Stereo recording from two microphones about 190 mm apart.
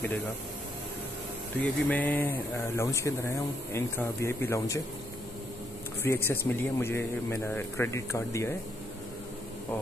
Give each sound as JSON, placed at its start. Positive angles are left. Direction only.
{"t": 1.6, "sound": "speech", "side_deg": 10}
{"t": 6.0, "sound": "speech", "side_deg": 10}